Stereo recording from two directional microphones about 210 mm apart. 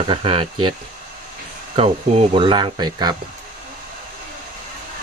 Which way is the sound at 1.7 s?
30° right (ahead or behind).